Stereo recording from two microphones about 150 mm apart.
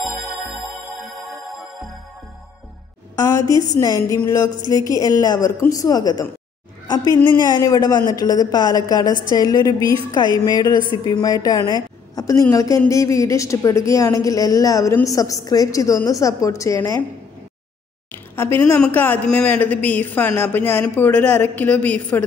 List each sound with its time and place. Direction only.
0.0 s music: centre (ahead or behind)
3.2 s a woman's voice: 20° left (ahead or behind)
18.3 s speech: 15° left (ahead or behind)